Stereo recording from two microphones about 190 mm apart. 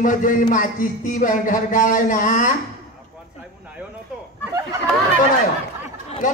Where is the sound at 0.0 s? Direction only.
45° left (ahead or behind).